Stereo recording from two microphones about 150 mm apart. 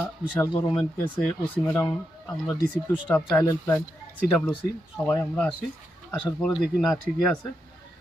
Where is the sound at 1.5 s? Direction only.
15° left (ahead or behind).